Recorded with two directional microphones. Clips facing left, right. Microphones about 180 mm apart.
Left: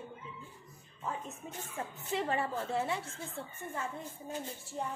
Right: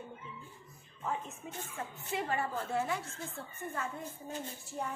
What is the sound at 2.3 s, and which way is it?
Speech, 30° left (ahead or behind).